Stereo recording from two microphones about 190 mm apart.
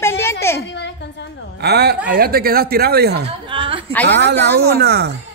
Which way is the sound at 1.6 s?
60° right (ahead or behind).